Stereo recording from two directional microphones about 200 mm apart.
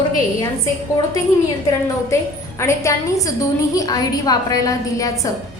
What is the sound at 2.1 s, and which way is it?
A woman's voice, 15° left (ahead or behind).